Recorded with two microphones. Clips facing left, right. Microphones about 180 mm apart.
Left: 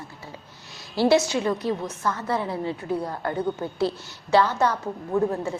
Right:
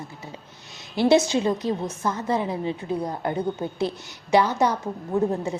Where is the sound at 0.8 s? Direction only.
20° right (ahead or behind).